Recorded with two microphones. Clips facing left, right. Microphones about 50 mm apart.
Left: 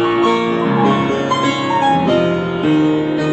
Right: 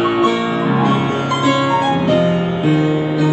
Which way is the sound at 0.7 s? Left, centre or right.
Centre.